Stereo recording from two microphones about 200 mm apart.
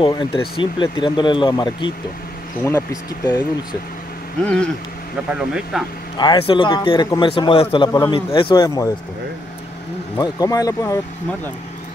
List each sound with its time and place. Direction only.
0.0 s a man's voice: 25° left (ahead or behind)
4.4 s speech: 5° left (ahead or behind)
6.1 s a man's voice: 25° left (ahead or behind)
10.1 s speech: 15° left (ahead or behind)